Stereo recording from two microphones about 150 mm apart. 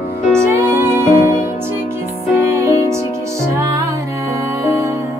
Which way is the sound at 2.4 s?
20° right (ahead or behind).